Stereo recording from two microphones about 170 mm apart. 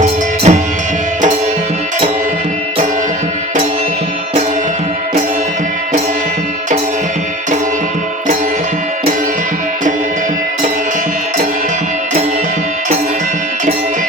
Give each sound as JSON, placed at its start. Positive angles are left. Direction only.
{"t": 0.0, "sound": "music", "side_deg": -40}